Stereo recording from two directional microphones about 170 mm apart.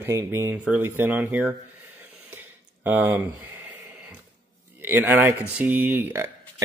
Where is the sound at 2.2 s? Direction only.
10° right (ahead or behind).